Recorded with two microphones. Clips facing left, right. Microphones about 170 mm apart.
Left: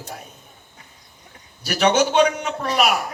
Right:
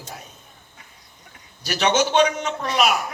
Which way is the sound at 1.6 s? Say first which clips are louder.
Left 3 dB; 55° left (ahead or behind).